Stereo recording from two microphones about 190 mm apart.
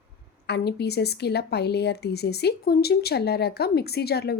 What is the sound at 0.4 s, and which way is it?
A woman's voice, 60° left (ahead or behind).